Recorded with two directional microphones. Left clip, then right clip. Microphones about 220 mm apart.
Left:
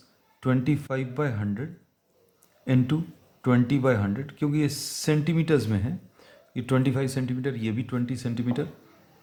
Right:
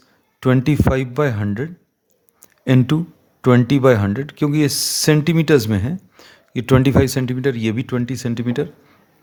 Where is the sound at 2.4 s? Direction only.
45° right (ahead or behind).